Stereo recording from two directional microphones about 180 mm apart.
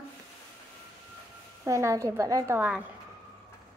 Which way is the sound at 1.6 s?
15° right (ahead or behind).